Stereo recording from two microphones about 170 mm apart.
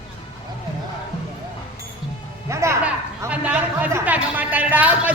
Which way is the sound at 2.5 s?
15° right (ahead or behind).